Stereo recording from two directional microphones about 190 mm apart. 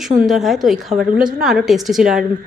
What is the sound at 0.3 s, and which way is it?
A woman's voice, centre (ahead or behind).